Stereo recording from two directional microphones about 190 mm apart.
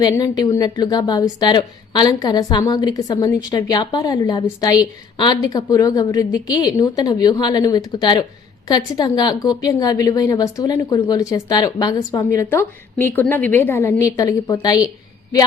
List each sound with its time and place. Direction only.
0.0 s a woman's voice: 20° left (ahead or behind)